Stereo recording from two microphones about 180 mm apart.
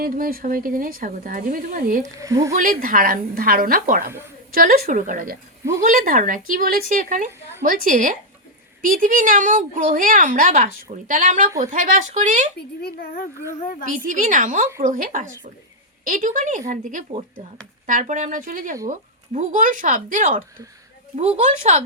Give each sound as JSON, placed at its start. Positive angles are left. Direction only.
{"t": 0.0, "sound": "a woman's voice", "side_deg": -50}
{"t": 2.1, "sound": "speech", "side_deg": -15}
{"t": 2.6, "sound": "a woman's voice", "side_deg": -50}
{"t": 12.5, "sound": "a woman's voice", "side_deg": 60}
{"t": 13.9, "sound": "a woman's voice", "side_deg": -50}